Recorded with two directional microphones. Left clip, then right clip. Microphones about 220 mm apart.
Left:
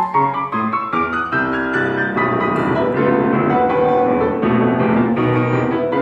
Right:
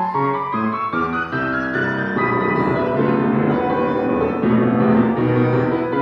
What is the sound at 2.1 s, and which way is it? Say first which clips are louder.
Music: left 1 dB; 45° left (ahead or behind).